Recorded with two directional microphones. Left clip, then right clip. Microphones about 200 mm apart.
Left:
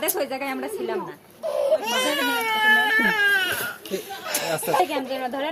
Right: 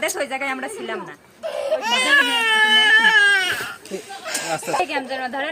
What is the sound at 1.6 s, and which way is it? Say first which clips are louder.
Speech: right 2 dB; 15° right (ahead or behind).